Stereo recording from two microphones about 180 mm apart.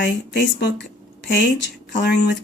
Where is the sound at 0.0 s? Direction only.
80° left.